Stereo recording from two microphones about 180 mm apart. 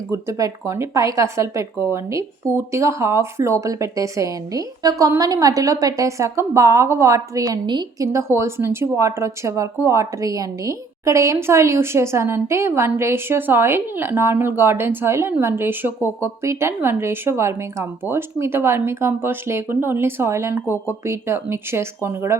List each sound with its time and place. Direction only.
0.1 s speech: 15° right (ahead or behind)